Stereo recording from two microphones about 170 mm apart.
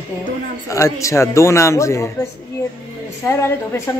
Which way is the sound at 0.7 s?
20° left (ahead or behind).